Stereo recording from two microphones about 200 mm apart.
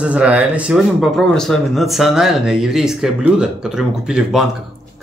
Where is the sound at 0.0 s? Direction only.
5° right (ahead or behind).